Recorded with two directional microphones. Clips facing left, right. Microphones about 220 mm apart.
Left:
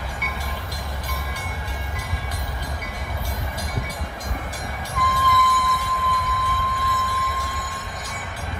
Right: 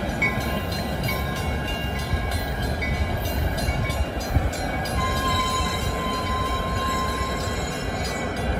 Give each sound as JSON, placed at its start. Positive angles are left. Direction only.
{"t": 4.9, "sound": "music", "side_deg": -25}